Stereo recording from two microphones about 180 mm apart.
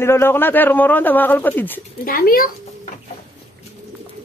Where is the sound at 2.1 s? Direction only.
55° left (ahead or behind).